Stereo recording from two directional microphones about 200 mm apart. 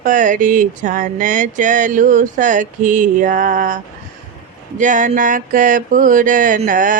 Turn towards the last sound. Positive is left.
turn(degrees=-40)  # may be behind; listen again after turning